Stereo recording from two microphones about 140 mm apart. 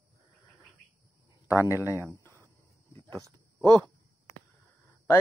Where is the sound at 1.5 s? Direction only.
15° right (ahead or behind).